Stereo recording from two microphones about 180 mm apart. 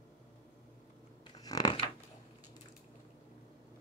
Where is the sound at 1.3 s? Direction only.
20° left (ahead or behind).